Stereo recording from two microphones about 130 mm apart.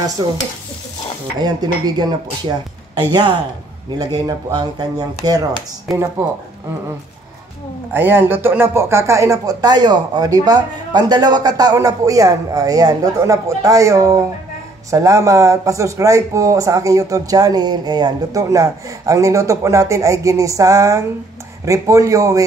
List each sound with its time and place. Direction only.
0.2 s speech: 35° right (ahead or behind)
1.4 s speech: 30° right (ahead or behind)
7.9 s speech: 15° right (ahead or behind)